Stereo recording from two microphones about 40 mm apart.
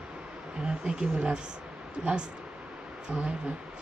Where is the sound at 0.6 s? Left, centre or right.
Right.